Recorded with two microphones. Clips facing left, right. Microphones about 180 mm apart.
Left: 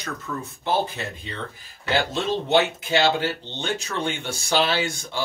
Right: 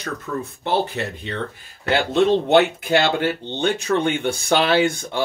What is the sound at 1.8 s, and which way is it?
Speech, 60° right (ahead or behind).